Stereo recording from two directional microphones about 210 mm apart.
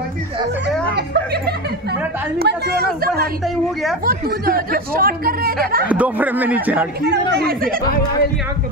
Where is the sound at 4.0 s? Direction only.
45° right (ahead or behind).